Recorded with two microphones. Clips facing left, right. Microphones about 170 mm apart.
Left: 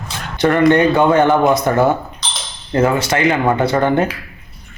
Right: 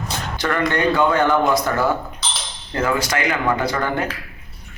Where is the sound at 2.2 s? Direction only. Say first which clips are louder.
Even; 5° right (ahead or behind).